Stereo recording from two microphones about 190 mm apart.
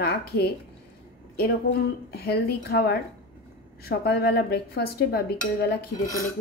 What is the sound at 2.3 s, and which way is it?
A woman's voice, 55° left (ahead or behind).